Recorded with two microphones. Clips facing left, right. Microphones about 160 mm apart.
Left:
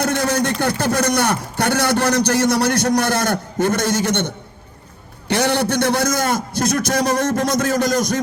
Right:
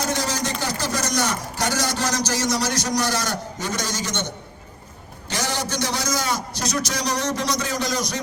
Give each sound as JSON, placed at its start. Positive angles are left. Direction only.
{"t": 0.0, "sound": "a man's voice", "side_deg": 55}
{"t": 5.3, "sound": "a man's voice", "side_deg": 60}